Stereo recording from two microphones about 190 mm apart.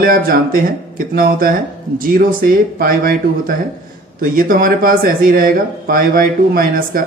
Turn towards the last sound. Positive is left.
turn(degrees=-50)  # may be behind; listen again after turning